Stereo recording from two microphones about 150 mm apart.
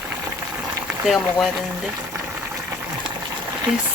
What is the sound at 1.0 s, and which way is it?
Speech, centre (ahead or behind).